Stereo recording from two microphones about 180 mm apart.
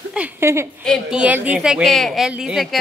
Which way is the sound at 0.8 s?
Centre (ahead or behind).